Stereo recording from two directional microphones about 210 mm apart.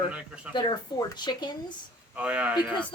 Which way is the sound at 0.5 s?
20° left (ahead or behind).